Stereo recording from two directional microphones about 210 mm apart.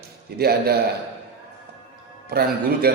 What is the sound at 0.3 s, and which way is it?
Speech, 50° right (ahead or behind).